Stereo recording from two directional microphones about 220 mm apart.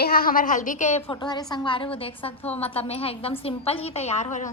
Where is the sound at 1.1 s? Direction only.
20° left (ahead or behind).